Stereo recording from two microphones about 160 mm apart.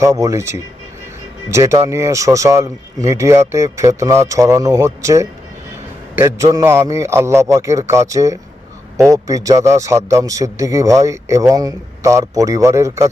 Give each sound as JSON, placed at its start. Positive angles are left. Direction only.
{"t": 0.0, "sound": "a man's voice", "side_deg": -20}
{"t": 1.5, "sound": "a man's voice", "side_deg": -20}